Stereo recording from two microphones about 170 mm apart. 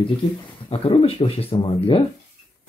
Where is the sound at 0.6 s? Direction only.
35° left (ahead or behind).